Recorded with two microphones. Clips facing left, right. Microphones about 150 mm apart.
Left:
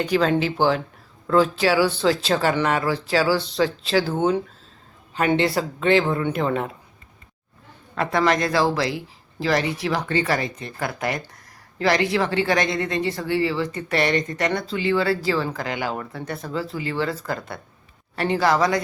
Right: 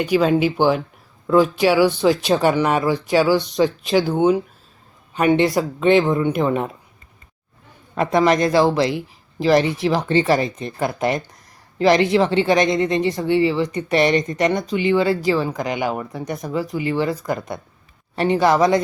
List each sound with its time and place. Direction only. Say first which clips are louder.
0.0 s speech: right 3 dB; 10° right (ahead or behind)
7.9 s a woman's voice: right 4 dB; 20° right (ahead or behind)